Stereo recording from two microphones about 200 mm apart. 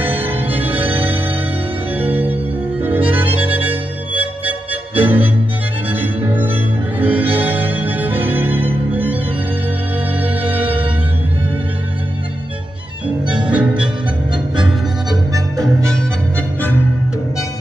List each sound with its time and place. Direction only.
0.0 s music: 10° right (ahead or behind)
10.2 s music: 10° right (ahead or behind)
13.3 s music: 5° right (ahead or behind)
14.6 s music: 20° right (ahead or behind)
15.6 s music: 5° left (ahead or behind)